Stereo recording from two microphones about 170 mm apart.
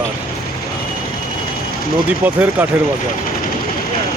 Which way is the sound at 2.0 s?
10° right (ahead or behind).